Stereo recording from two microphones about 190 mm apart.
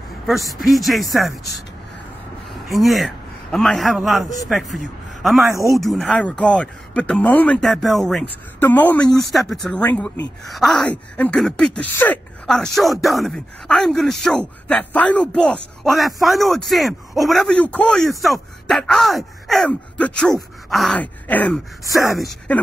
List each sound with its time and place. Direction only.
0.3 s speech: centre (ahead or behind)
2.5 s a man's voice: centre (ahead or behind)